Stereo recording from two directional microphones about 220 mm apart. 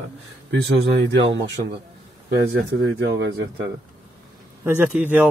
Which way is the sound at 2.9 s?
50° right (ahead or behind).